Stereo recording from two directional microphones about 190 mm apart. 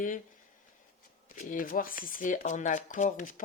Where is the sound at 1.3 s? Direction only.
45° left (ahead or behind).